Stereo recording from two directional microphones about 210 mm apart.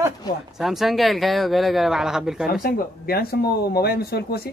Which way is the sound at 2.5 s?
45° left (ahead or behind).